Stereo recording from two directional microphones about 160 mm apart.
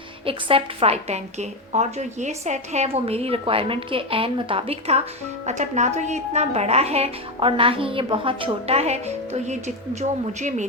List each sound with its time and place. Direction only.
0.3 s a woman's voice: 35° right (ahead or behind)